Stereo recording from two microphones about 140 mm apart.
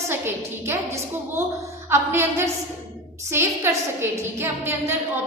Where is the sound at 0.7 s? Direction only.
15° right (ahead or behind).